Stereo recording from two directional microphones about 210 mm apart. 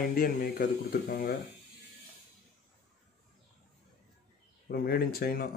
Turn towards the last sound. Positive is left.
turn(degrees=45)  # may be behind; listen again after turning